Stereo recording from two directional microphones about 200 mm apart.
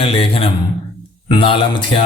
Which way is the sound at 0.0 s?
30° left (ahead or behind).